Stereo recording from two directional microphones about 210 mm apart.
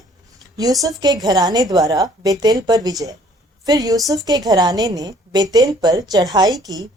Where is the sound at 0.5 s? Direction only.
15° right (ahead or behind).